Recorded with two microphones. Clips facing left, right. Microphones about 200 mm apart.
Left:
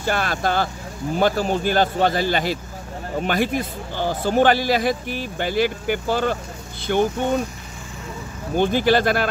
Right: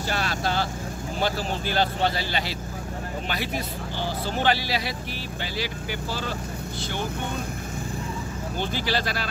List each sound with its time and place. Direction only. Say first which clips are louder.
0.0 s speech: left 5 dB; 50° left (ahead or behind)
8.5 s speech: left 11 dB; 50° left (ahead or behind)